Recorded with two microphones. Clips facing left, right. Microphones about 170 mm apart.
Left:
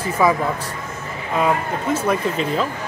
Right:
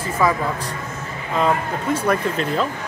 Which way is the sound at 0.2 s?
15° left (ahead or behind).